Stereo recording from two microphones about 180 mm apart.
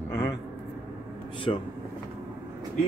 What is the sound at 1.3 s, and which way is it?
Speech, 30° left (ahead or behind).